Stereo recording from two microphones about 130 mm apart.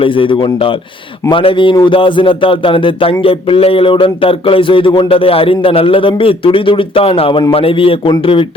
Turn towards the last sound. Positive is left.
turn(degrees=45)  # may be behind; listen again after turning